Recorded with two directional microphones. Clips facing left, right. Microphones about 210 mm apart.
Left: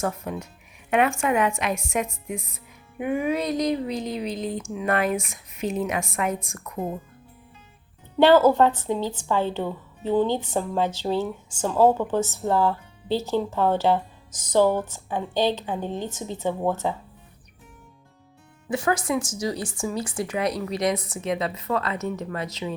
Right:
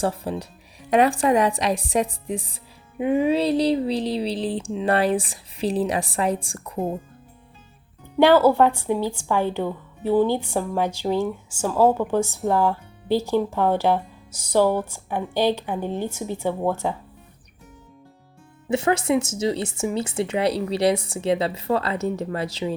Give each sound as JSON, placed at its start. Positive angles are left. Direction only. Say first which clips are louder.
{"t": 0.0, "sound": "speech", "louder": "right 3 dB", "side_deg": -35}
{"t": 8.2, "sound": "speech", "louder": "right 1 dB", "side_deg": -15}
{"t": 18.7, "sound": "speech", "louder": "right 4 dB", "side_deg": -25}